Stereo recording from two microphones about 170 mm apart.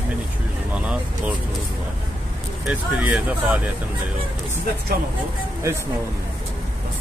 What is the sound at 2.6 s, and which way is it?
Speech, 5° right (ahead or behind).